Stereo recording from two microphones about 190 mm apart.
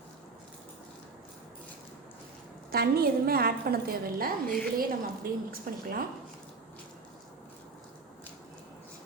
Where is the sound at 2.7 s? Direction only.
55° right (ahead or behind).